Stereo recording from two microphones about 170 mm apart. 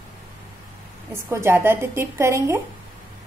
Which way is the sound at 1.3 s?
15° right (ahead or behind).